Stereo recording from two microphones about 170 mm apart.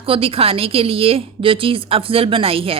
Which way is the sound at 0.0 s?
35° right (ahead or behind).